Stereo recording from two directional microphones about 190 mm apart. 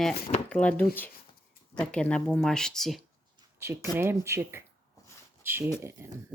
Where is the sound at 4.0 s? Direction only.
15° right (ahead or behind).